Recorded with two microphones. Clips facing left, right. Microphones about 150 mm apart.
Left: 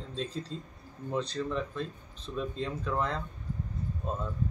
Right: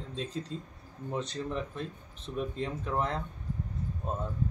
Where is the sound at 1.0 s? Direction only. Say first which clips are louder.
Left 2 dB; 15° right (ahead or behind).